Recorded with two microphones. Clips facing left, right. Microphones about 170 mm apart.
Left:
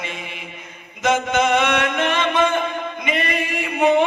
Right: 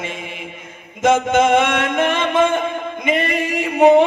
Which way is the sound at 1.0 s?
50° right (ahead or behind).